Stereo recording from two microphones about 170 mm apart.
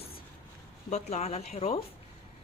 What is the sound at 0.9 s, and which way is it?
Speech, 40° left (ahead or behind).